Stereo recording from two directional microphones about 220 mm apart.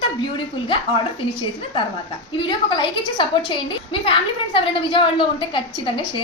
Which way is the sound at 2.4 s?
20° left (ahead or behind).